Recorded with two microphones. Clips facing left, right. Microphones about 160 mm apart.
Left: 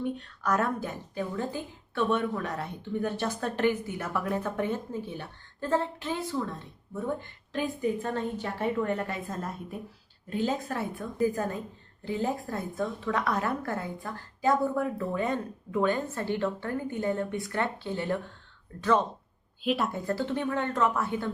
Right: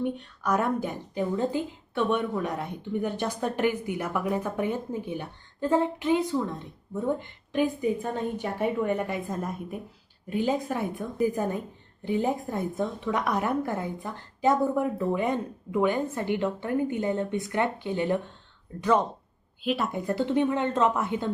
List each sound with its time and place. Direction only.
0.0 s a woman's voice: 15° right (ahead or behind)
19.6 s a woman's voice: centre (ahead or behind)
19.9 s a woman's voice: 20° right (ahead or behind)